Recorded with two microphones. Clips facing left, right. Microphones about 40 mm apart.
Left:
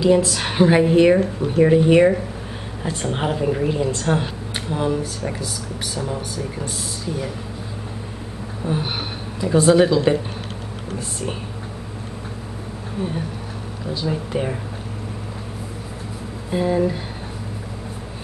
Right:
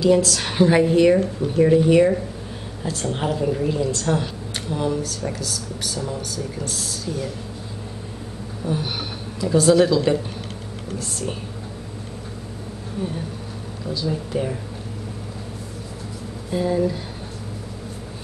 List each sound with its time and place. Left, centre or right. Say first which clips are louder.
0.0 s a woman's voice: left 1 dB; left
8.6 s a woman's voice: left 1 dB; left
13.8 s a woman's voice: left 1 dB; left
16.4 s a woman's voice: left 2 dB; left